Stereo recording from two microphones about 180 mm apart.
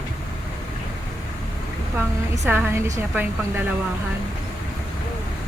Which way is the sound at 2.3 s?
15° right (ahead or behind).